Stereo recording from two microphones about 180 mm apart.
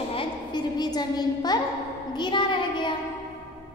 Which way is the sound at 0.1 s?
25° left (ahead or behind).